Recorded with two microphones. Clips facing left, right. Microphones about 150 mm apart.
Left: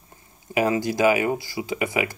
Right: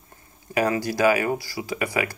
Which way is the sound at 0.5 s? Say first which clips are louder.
Left 1 dB; 20° left (ahead or behind).